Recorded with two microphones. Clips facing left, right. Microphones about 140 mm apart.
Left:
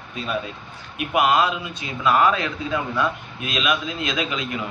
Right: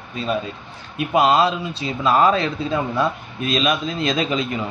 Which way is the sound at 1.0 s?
30° right (ahead or behind).